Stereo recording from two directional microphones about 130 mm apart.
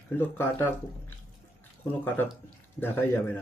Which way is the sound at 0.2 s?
15° left (ahead or behind).